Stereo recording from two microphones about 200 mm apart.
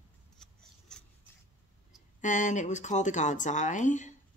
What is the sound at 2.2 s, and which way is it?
A woman's voice, 40° left (ahead or behind).